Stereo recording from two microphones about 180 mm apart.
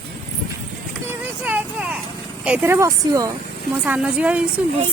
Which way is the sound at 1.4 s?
10° right (ahead or behind).